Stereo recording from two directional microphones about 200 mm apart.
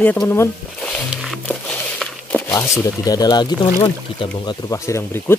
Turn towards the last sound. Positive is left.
turn(degrees=15)  # may be behind; listen again after turning